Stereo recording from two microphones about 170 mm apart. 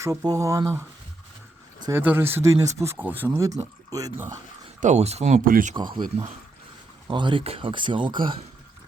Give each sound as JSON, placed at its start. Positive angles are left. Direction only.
{"t": 0.0, "sound": "speech", "side_deg": -20}
{"t": 4.8, "sound": "speech", "side_deg": -40}
{"t": 5.7, "sound": "speech", "side_deg": -30}